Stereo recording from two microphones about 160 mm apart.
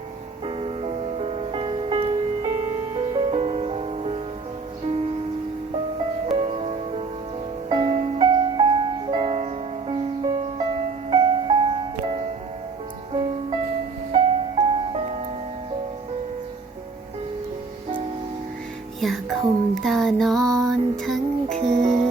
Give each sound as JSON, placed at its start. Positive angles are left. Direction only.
{"t": 0.4, "sound": "music", "side_deg": -40}
{"t": 6.2, "sound": "music", "side_deg": -40}
{"t": 18.9, "sound": "music", "side_deg": 0}
{"t": 21.6, "sound": "music", "side_deg": -45}